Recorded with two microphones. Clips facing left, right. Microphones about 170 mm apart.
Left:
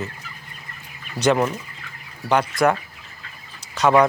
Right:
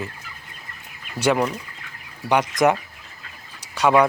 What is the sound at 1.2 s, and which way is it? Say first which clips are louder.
Speech: left 1 dB; 10° right (ahead or behind).